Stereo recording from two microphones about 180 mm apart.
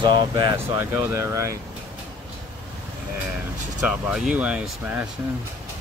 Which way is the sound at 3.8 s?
5° right (ahead or behind).